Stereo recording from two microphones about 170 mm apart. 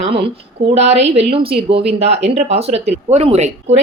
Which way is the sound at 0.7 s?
40° right (ahead or behind).